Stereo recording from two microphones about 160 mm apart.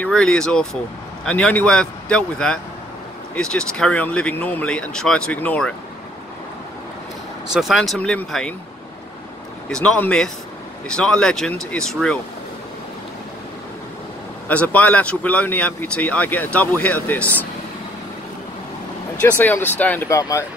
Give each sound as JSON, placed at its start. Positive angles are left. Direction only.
{"t": 0.0, "sound": "a man's voice", "side_deg": 5}
{"t": 7.5, "sound": "a man's voice", "side_deg": 0}
{"t": 9.7, "sound": "a man's voice", "side_deg": 5}
{"t": 14.5, "sound": "speech", "side_deg": 10}
{"t": 19.2, "sound": "speech", "side_deg": 10}